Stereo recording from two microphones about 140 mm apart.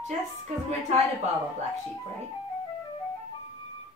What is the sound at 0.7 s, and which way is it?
Speech, 50° right (ahead or behind).